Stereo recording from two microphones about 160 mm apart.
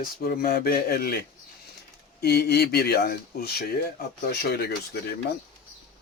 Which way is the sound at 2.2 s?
90° left.